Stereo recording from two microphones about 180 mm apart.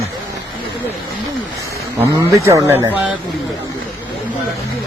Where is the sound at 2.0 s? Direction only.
15° right (ahead or behind).